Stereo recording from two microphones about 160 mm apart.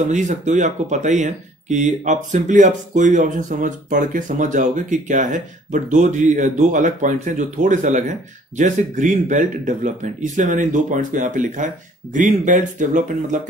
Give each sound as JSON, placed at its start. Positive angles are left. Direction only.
{"t": 0.1, "sound": "speech", "side_deg": -50}